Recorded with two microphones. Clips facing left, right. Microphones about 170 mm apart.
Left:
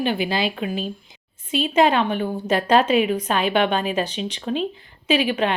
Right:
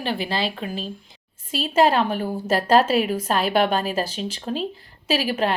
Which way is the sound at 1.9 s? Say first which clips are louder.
Left 1 dB; 5° right (ahead or behind).